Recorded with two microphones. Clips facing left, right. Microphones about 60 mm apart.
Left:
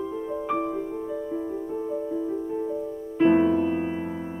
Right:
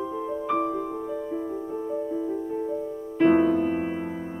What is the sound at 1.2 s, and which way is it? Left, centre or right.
Music, centre.